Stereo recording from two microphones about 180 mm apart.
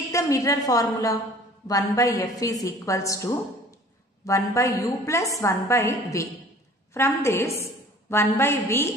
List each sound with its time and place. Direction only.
0.1 s a woman's voice: 20° left (ahead or behind)